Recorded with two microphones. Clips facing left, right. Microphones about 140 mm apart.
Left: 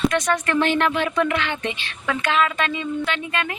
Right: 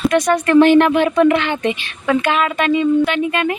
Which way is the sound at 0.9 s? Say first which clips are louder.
Right 8 dB; 45° right (ahead or behind).